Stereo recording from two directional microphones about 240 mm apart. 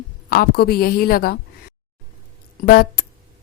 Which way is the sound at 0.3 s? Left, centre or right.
Left.